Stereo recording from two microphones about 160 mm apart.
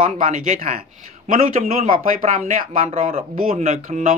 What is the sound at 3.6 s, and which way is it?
Speech, 50° right (ahead or behind).